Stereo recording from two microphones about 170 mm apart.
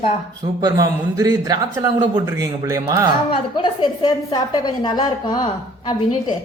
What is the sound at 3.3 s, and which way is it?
A woman's voice, 25° left (ahead or behind).